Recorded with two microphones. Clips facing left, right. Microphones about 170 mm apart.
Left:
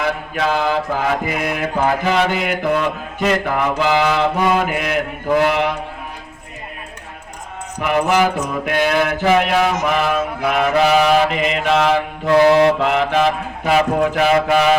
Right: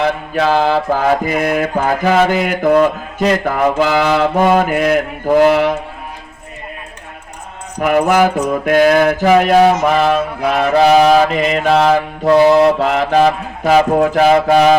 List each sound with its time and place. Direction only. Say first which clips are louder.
0.0 s mantra: right 5 dB; 35° right (ahead or behind)
7.8 s mantra: right 4 dB; 45° right (ahead or behind)